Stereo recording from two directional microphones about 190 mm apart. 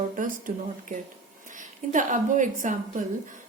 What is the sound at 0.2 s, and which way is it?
A woman's voice, 45° right (ahead or behind).